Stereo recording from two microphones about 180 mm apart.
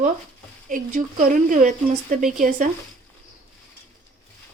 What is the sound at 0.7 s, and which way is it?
A woman's voice, 50° right (ahead or behind).